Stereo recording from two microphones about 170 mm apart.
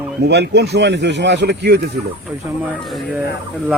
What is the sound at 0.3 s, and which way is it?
Speech, 80° right.